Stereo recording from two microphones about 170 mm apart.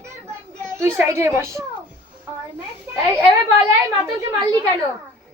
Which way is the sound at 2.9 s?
10° right (ahead or behind).